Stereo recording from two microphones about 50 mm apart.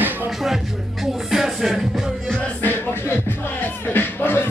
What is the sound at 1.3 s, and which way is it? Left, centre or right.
Music, centre.